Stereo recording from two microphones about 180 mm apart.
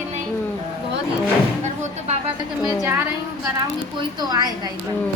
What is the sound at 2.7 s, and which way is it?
Speech, 10° right (ahead or behind).